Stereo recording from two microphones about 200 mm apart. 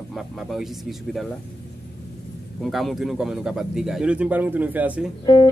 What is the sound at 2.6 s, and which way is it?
A man's voice, centre (ahead or behind).